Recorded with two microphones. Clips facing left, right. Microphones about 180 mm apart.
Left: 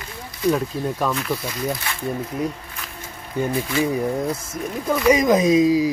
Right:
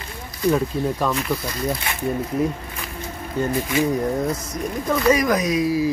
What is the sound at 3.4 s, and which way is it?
Speech, 10° left (ahead or behind).